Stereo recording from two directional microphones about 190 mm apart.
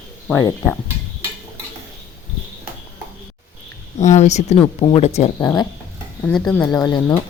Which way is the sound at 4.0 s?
35° left (ahead or behind).